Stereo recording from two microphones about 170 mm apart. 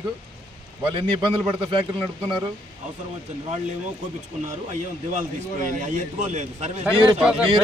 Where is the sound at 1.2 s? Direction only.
30° right (ahead or behind).